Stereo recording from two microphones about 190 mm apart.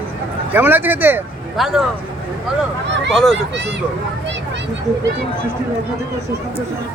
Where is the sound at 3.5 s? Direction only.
65° right (ahead or behind).